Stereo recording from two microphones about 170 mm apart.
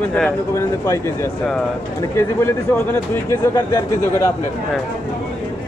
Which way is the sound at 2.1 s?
10° left (ahead or behind).